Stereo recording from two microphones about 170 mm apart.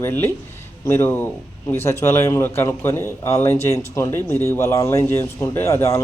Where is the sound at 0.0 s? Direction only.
15° left (ahead or behind).